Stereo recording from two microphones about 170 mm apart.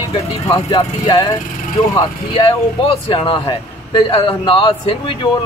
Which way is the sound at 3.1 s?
30° left (ahead or behind).